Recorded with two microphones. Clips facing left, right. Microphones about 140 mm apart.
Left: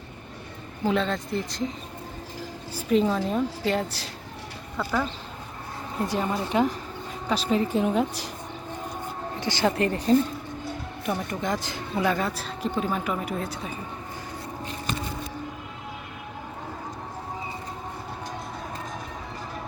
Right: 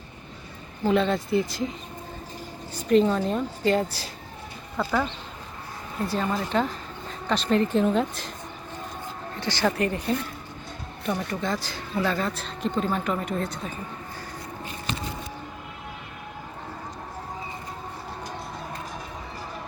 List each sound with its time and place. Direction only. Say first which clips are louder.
0.9 s speech: right 3 dB; 5° right (ahead or behind)
2.7 s a woman's voice: right 2 dB; 5° left (ahead or behind)
6.1 s speech: right 1 dB; 20° left (ahead or behind)
9.4 s speech: left 1 dB; 20° left (ahead or behind)
11.0 s speech: right 1 dB; 15° left (ahead or behind)